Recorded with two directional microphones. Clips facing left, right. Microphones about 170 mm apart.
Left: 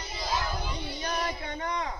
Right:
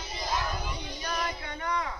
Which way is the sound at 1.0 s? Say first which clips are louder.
Left 1 dB; 40° left (ahead or behind).